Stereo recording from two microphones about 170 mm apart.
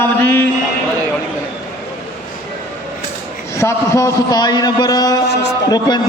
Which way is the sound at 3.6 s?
15° left (ahead or behind).